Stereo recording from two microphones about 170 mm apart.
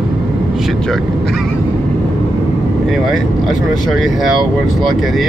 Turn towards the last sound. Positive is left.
turn(degrees=0)  # may be behind; listen again after turning